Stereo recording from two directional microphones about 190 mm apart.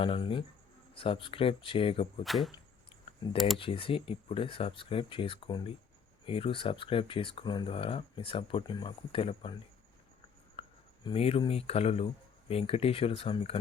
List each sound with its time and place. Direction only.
0.0 s speech: 30° left (ahead or behind)
2.2 s speech: centre (ahead or behind)
3.6 s speech: 30° left (ahead or behind)
10.6 s speech: 30° left (ahead or behind)